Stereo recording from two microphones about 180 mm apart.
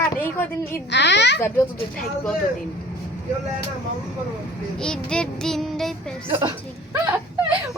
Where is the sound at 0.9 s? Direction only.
75° left (ahead or behind).